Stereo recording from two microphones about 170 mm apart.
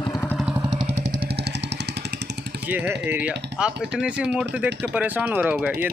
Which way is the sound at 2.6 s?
10° right (ahead or behind).